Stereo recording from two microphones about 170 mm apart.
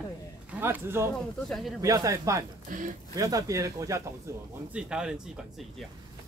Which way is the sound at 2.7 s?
50° right (ahead or behind).